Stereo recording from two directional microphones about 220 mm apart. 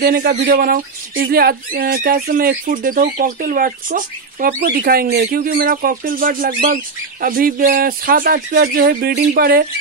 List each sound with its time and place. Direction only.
0.0 s speech: 45° right (ahead or behind)